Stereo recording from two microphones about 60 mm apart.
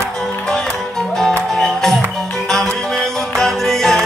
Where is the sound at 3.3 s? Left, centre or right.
Centre.